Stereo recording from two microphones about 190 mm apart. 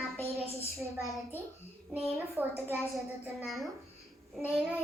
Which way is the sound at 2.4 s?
10° right (ahead or behind).